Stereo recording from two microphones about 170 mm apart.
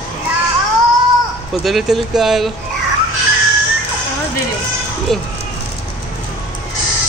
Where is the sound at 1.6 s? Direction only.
Centre (ahead or behind).